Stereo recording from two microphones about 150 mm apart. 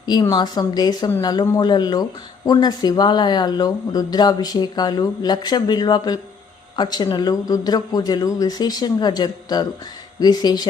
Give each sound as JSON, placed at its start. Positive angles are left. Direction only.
{"t": 0.0, "sound": "speech", "side_deg": 30}